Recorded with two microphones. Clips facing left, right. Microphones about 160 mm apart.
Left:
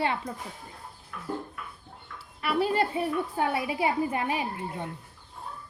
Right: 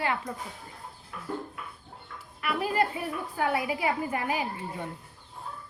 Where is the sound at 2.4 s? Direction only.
30° left (ahead or behind).